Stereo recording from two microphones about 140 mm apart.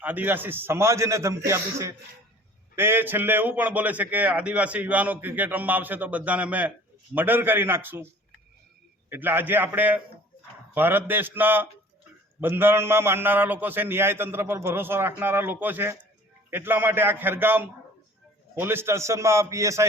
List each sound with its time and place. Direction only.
0.0 s a man's voice: 10° right (ahead or behind)
9.0 s a man's voice: 15° right (ahead or behind)